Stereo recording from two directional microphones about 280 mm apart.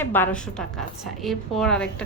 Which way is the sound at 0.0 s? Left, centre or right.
Centre.